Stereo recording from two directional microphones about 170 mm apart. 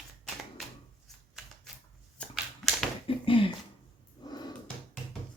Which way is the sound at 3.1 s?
30° left (ahead or behind).